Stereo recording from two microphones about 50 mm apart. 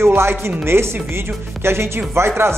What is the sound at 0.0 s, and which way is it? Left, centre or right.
Speech, right.